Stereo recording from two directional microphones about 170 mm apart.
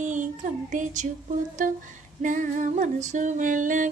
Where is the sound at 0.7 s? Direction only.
50° right (ahead or behind).